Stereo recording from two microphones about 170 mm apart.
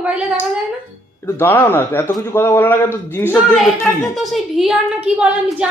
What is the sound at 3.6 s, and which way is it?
A woman's voice, centre (ahead or behind).